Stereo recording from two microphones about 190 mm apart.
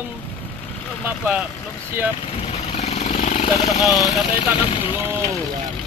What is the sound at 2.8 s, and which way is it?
Vehicle, 40° left (ahead or behind).